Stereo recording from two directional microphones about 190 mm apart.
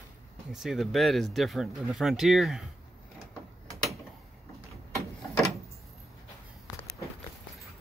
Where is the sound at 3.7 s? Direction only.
Centre (ahead or behind).